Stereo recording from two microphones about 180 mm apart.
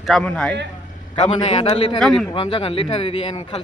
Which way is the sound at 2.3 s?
30° left (ahead or behind).